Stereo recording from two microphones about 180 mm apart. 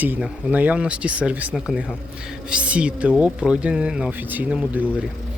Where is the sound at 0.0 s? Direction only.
10° right (ahead or behind).